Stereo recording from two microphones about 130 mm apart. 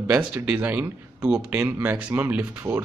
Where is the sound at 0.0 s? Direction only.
10° right (ahead or behind).